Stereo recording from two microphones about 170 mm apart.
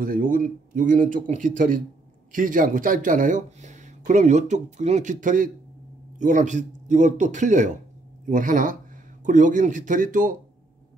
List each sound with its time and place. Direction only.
0.0 s speech: 55° right (ahead or behind)